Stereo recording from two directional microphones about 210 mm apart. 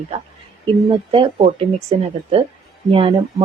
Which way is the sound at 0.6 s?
25° right (ahead or behind).